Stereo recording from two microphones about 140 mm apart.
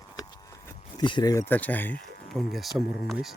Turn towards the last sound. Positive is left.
turn(degrees=-5)  # may be behind; listen again after turning